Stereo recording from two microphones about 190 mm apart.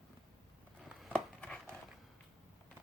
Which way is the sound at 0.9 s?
Centre (ahead or behind).